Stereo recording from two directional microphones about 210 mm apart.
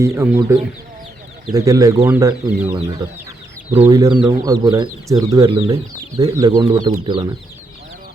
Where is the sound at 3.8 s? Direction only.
20° right (ahead or behind).